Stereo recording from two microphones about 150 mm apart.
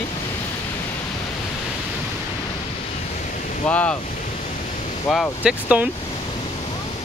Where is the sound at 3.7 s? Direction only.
10° left (ahead or behind).